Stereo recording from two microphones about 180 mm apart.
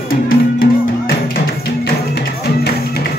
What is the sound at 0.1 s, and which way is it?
Music, 55° left (ahead or behind).